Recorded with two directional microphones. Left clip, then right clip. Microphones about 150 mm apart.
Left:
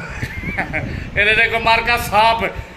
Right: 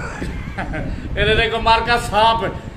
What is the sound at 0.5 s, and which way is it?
Speech, 15° right (ahead or behind).